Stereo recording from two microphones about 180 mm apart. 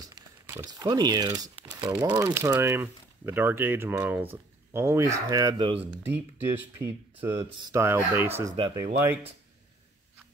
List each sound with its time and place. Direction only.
0.6 s speech: 20° right (ahead or behind)
8.5 s speech: 25° right (ahead or behind)